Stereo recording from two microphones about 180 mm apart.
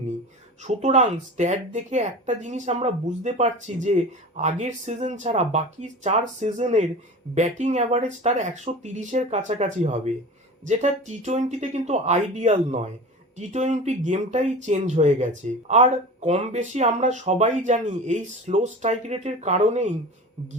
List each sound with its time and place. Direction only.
0.6 s speech: 40° right (ahead or behind)